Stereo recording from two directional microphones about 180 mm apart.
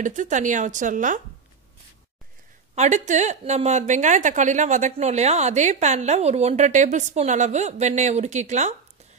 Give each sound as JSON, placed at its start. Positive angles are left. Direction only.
{"t": 0.0, "sound": "speech", "side_deg": -45}
{"t": 2.7, "sound": "a woman's voice", "side_deg": -40}